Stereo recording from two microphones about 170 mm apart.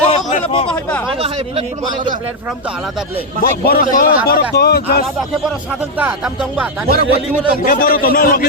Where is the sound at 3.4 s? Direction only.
60° left (ahead or behind).